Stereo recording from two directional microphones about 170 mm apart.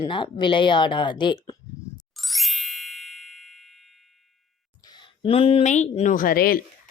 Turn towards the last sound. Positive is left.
turn(degrees=60)  # may be behind; listen again after turning